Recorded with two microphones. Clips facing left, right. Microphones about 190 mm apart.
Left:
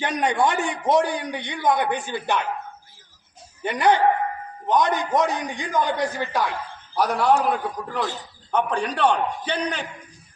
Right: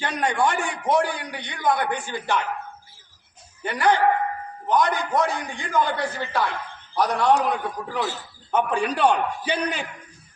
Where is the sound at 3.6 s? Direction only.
20° left (ahead or behind).